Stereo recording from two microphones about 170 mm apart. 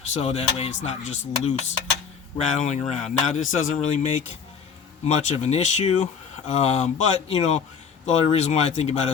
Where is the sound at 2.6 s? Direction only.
45° left (ahead or behind).